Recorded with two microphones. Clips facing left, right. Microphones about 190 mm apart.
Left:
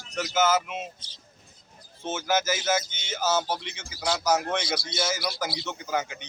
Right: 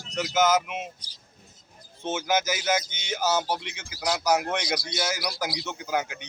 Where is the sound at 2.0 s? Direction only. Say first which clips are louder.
Right 1 dB; 15° right (ahead or behind).